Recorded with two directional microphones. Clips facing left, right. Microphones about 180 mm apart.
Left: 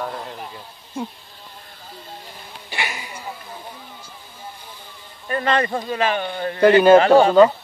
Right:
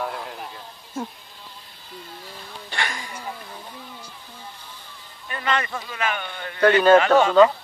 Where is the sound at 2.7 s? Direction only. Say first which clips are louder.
Left 1 dB; 5° left (ahead or behind).